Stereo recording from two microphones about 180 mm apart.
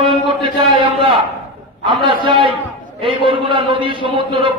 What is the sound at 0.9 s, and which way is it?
A man's voice, 30° right (ahead or behind).